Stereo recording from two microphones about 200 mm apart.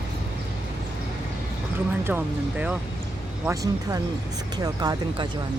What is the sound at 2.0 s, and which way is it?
Speech, 10° right (ahead or behind).